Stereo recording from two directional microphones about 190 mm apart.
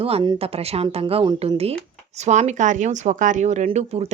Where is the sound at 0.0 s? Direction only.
30° right (ahead or behind).